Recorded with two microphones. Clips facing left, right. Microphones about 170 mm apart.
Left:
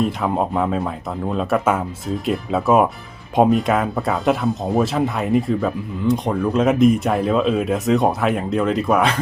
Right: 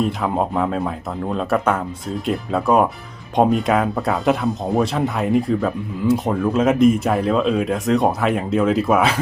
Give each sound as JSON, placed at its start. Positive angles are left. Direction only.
{"t": 0.0, "sound": "speech", "side_deg": 0}